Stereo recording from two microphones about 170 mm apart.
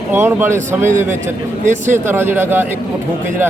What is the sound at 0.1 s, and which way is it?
A man's voice, 15° right (ahead or behind).